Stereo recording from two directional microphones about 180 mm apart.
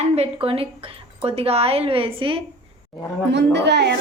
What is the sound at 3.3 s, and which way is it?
Speech, 75° right (ahead or behind).